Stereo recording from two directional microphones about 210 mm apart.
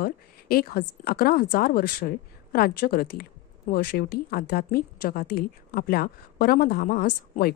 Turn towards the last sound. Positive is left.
turn(degrees=45)  # may be behind; listen again after turning